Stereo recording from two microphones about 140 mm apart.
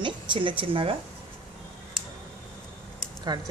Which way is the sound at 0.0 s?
35° right (ahead or behind).